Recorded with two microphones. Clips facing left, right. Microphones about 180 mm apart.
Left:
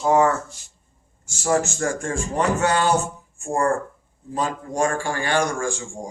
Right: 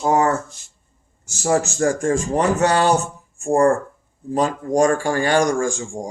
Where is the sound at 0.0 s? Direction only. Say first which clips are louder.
Even; 40° right (ahead or behind).